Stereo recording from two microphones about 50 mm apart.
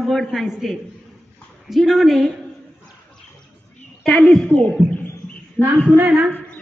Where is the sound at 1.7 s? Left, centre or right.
Centre.